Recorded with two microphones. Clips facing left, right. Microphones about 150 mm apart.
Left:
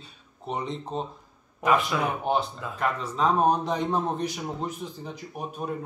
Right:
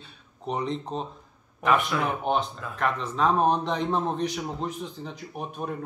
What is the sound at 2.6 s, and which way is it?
Speech, 20° left (ahead or behind).